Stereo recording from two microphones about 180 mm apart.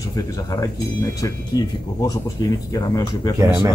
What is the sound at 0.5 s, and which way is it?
Speech, 20° left (ahead or behind).